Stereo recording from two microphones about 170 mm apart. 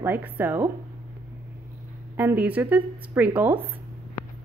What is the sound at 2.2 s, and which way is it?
A woman's voice, 10° right (ahead or behind).